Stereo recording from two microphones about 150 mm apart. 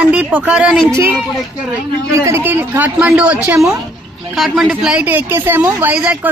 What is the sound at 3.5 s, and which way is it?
Speech, 20° right (ahead or behind).